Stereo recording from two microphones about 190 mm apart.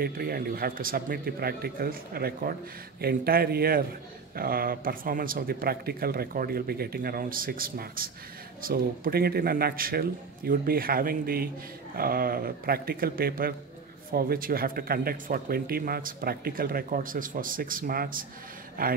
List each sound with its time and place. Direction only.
0.0 s a man's voice: 50° right (ahead or behind)